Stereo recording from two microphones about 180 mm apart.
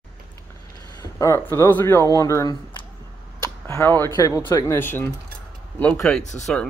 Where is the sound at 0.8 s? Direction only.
20° left (ahead or behind).